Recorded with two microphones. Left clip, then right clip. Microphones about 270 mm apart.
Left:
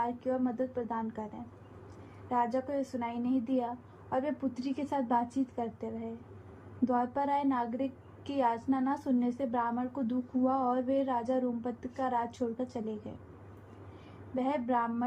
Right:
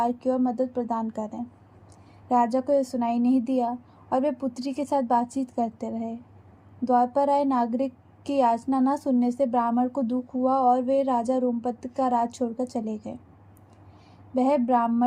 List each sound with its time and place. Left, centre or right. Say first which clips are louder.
0.0 s a woman's voice: right 8 dB; right
2.3 s a woman's voice: right 9 dB; right
14.3 s a woman's voice: right 9 dB; right